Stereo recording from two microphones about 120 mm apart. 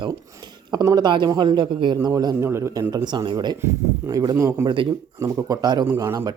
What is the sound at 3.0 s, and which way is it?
Speech, 40° right (ahead or behind).